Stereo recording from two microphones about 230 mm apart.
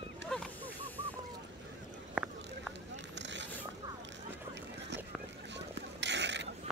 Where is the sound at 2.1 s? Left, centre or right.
Centre.